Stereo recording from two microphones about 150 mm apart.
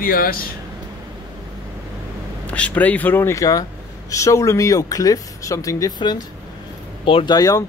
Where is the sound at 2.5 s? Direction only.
10° left (ahead or behind).